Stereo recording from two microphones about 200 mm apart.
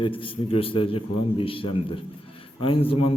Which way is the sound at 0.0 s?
25° left (ahead or behind).